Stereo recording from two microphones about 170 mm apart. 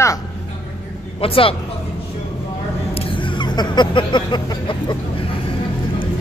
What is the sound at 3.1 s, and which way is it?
Music, 30° left (ahead or behind).